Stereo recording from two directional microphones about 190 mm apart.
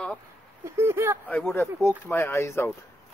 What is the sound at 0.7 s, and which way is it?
Speech, 15° right (ahead or behind).